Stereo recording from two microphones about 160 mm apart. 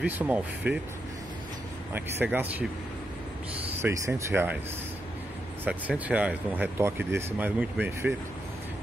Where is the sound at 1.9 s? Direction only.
10° right (ahead or behind).